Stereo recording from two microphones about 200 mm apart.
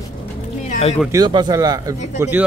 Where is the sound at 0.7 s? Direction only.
30° left (ahead or behind).